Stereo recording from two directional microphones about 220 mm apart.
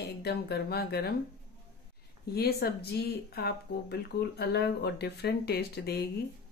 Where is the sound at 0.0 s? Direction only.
45° left (ahead or behind).